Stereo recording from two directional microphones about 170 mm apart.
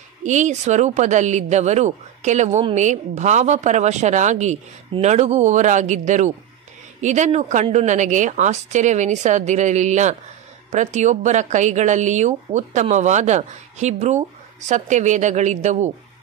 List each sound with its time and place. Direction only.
0.2 s a woman's voice: 45° right (ahead or behind)